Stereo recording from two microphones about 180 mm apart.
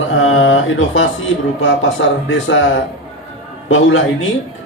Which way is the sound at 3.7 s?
90° left.